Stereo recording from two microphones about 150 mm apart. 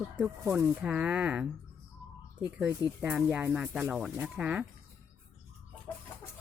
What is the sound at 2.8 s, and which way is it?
Speech, 15° right (ahead or behind).